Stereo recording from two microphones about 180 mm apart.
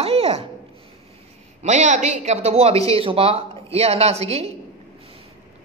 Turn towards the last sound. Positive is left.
turn(degrees=-35)  # may be behind; listen again after turning